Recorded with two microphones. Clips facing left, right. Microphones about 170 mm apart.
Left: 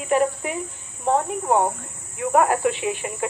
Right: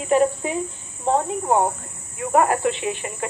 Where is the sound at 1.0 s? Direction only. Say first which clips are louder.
Even; 15° right (ahead or behind).